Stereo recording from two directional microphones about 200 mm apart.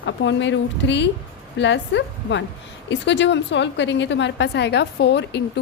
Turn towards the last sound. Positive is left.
turn(degrees=60)  # may be behind; listen again after turning